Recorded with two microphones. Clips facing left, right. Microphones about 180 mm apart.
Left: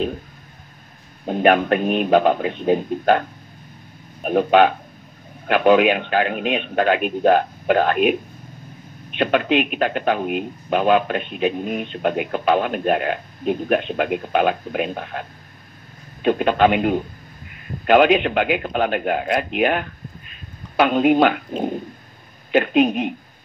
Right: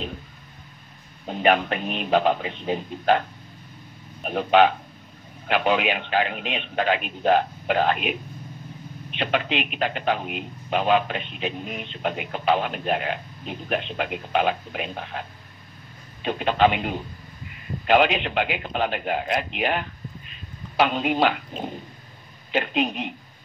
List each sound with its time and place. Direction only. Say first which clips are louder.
1.2 s a man's voice: left 5 dB; 50° left (ahead or behind)